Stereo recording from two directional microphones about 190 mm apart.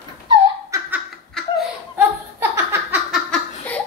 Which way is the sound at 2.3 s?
10° right (ahead or behind).